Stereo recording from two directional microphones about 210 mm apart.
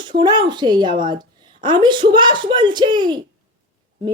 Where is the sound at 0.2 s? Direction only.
20° right (ahead or behind).